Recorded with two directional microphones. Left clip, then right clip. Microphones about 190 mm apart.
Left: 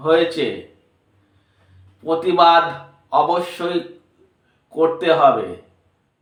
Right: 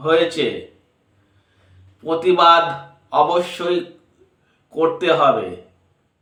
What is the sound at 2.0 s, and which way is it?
Speech, 15° right (ahead or behind).